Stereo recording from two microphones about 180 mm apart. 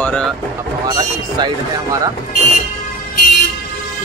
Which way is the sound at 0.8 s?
25° right (ahead or behind).